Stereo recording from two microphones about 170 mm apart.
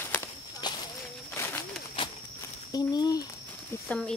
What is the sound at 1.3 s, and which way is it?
Bird, 15° left (ahead or behind).